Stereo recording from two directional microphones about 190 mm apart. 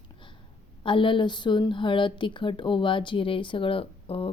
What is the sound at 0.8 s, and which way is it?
A woman's voice, 25° left (ahead or behind).